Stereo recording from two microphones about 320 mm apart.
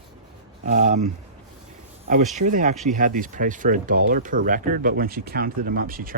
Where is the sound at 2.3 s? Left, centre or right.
Right.